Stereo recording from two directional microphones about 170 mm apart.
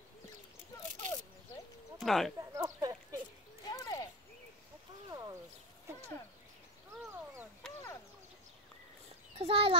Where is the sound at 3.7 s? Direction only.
20° left (ahead or behind).